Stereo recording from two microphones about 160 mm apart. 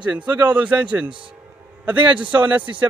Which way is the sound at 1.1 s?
30° right (ahead or behind).